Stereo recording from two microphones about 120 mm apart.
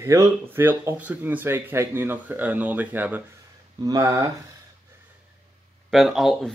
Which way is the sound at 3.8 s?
30° right (ahead or behind).